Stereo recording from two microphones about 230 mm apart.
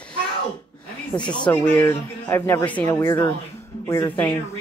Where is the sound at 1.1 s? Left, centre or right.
Centre.